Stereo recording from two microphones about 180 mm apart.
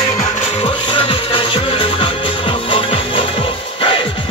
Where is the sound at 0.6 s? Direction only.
30° left (ahead or behind).